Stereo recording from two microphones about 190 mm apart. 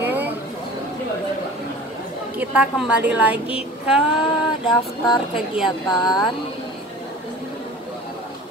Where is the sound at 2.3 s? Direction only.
5° right (ahead or behind).